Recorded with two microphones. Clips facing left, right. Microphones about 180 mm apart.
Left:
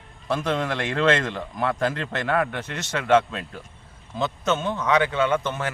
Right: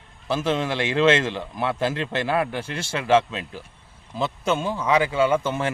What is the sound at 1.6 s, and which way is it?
Speech, 25° right (ahead or behind).